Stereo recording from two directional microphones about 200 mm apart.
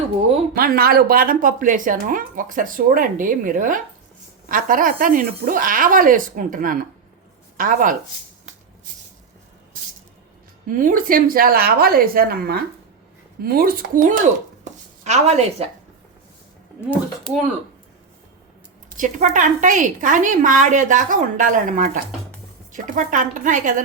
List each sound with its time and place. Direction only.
0.5 s speech: 50° right (ahead or behind)
10.7 s speech: 40° right (ahead or behind)
14.6 s a sound: 35° right (ahead or behind)
18.9 s a woman's voice: 40° right (ahead or behind)